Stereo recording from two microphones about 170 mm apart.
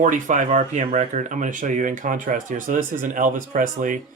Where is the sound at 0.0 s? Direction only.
50° right (ahead or behind).